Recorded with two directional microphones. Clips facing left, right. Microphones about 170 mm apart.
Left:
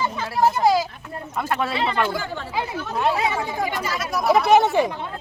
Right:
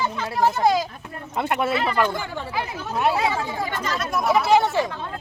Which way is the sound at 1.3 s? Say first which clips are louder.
Right 2 dB; 20° right (ahead or behind).